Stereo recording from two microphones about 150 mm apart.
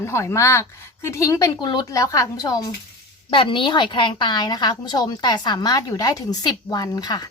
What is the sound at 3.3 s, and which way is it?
A woman's voice, 35° left (ahead or behind).